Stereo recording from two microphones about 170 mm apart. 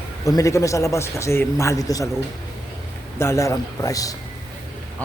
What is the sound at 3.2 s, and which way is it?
Speech, 15° left (ahead or behind).